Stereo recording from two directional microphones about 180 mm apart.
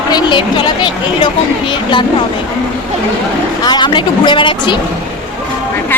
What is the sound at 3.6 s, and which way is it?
Speech, 25° left (ahead or behind).